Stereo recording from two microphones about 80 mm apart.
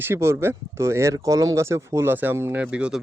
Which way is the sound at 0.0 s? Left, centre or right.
Right.